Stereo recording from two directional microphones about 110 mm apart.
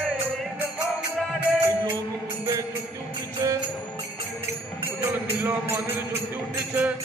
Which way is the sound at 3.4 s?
35° right (ahead or behind).